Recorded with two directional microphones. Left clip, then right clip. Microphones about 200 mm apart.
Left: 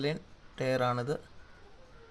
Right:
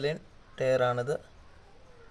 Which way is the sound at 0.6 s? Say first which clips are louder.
Right 4 dB; 5° right (ahead or behind).